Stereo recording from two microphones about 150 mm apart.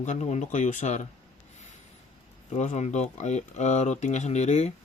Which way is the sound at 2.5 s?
50° left (ahead or behind).